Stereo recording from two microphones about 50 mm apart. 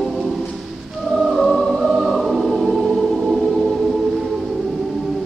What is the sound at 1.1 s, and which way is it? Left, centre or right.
Choir, centre.